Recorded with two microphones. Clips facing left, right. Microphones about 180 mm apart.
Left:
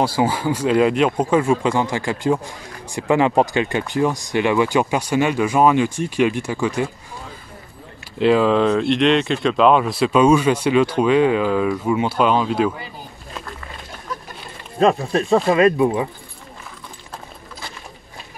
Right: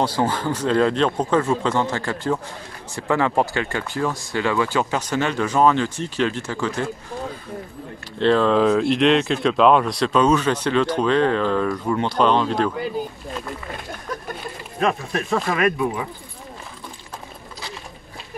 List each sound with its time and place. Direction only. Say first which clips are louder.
0.0 s speech: left 2 dB; 10° left (ahead or behind)
8.2 s speech: left 2 dB; 10° left (ahead or behind)
14.8 s speech: left 6 dB; 30° left (ahead or behind)